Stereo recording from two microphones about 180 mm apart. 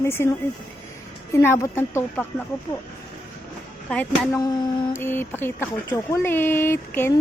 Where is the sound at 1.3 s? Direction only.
15° left (ahead or behind).